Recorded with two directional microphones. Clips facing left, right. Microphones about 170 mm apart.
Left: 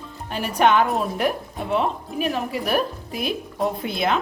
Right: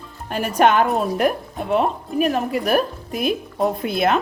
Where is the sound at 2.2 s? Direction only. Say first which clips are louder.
Right 5 dB; 45° right (ahead or behind).